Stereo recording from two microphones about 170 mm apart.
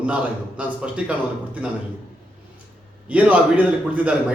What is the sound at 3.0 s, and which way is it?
Speech, 10° right (ahead or behind).